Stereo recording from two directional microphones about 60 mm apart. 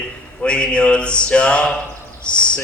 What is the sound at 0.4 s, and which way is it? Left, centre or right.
Mantra, centre.